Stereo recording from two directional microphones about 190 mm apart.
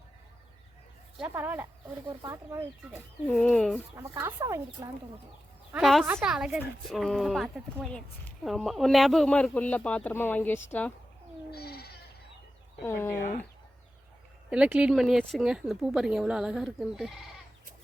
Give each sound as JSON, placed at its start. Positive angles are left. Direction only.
{"t": 1.2, "sound": "speech", "side_deg": -10}
{"t": 3.2, "sound": "speech", "side_deg": 5}
{"t": 3.9, "sound": "speech", "side_deg": -15}
{"t": 5.8, "sound": "speech", "side_deg": 0}
{"t": 11.5, "sound": "goat", "side_deg": 55}
{"t": 12.8, "sound": "speech", "side_deg": 15}
{"t": 13.1, "sound": "speech", "side_deg": 40}
{"t": 14.5, "sound": "speech", "side_deg": -5}